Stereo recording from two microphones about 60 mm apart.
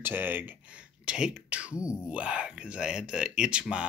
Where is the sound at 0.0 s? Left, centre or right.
Right.